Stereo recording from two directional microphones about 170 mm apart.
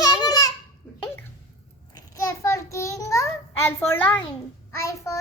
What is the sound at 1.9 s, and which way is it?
A child's voice, 20° left (ahead or behind).